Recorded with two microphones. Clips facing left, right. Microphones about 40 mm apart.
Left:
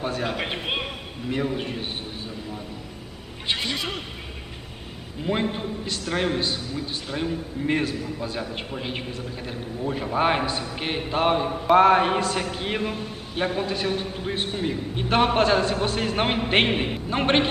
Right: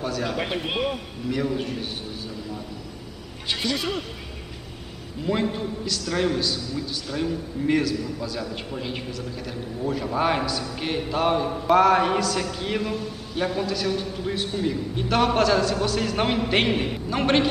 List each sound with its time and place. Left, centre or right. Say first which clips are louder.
0.0 s a man's voice: even; left
3.4 s a sound: even; left
5.2 s a man's voice: right 1 dB; left
8.7 s a man's voice: even; left